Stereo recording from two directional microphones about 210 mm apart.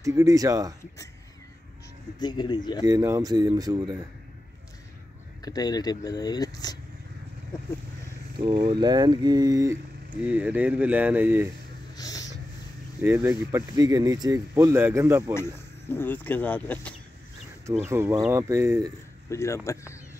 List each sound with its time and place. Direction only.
0.0 s speech: 15° right (ahead or behind)
2.1 s speech: 20° left (ahead or behind)
2.8 s speech: 15° right (ahead or behind)
5.4 s speech: 20° left (ahead or behind)
8.4 s speech: 20° right (ahead or behind)
12.0 s a sound: 15° left (ahead or behind)
13.0 s speech: 10° right (ahead or behind)
15.9 s speech: 10° left (ahead or behind)
17.8 s speech: 10° right (ahead or behind)
19.2 s speech: 15° left (ahead or behind)